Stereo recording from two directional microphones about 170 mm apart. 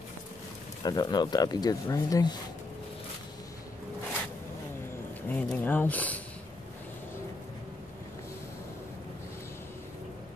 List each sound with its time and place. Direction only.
0.8 s speech: 25° left (ahead or behind)
5.3 s speech: 10° left (ahead or behind)